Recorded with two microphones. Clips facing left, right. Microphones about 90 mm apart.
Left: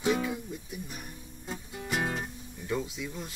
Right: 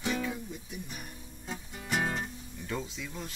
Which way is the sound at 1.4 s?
Centre (ahead or behind).